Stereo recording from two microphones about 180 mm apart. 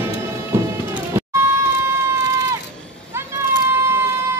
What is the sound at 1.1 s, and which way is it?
Cat, 15° right (ahead or behind).